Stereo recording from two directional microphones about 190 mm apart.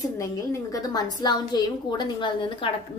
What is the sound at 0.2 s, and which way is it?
A woman's voice, 15° left (ahead or behind).